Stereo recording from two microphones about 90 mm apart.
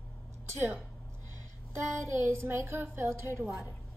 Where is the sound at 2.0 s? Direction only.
30° right (ahead or behind).